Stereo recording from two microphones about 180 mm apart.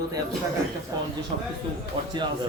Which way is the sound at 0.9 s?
20° right (ahead or behind).